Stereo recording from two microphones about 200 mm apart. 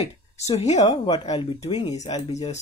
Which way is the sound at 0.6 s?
35° left (ahead or behind).